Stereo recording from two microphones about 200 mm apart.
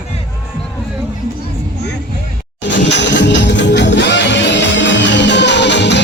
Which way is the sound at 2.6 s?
65° left (ahead or behind).